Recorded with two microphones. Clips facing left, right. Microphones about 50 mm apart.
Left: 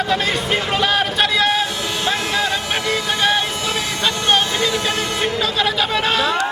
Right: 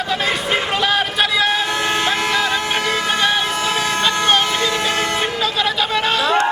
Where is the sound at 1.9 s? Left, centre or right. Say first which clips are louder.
Right 3 dB; right.